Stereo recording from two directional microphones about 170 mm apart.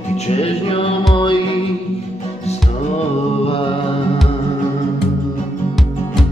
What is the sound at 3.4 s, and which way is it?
Mantra, 35° left (ahead or behind).